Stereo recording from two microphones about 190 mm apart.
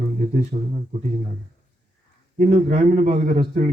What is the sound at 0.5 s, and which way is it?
Speech, 40° right (ahead or behind).